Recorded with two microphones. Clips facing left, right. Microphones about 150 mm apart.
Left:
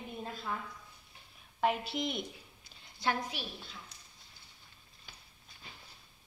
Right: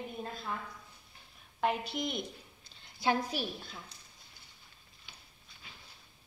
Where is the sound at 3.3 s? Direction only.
40° right (ahead or behind).